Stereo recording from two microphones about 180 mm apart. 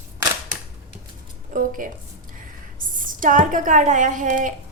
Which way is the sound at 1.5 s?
50° right (ahead or behind).